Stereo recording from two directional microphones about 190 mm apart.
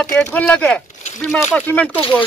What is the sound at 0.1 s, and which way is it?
Speech, 5° left (ahead or behind).